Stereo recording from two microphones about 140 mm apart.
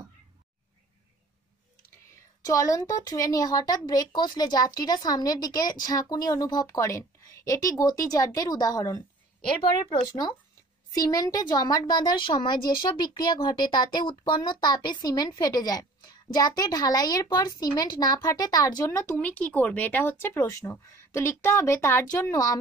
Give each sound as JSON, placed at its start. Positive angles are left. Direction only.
{"t": 2.4, "sound": "speech", "side_deg": 25}
{"t": 18.9, "sound": "speech", "side_deg": 15}